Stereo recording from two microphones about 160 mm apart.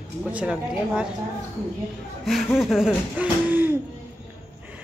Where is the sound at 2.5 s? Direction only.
Centre (ahead or behind).